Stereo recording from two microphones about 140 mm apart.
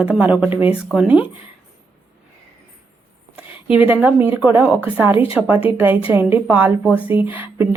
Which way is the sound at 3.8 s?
10° right (ahead or behind).